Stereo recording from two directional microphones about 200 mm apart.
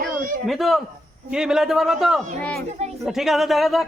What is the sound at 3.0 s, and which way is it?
Speech, centre (ahead or behind).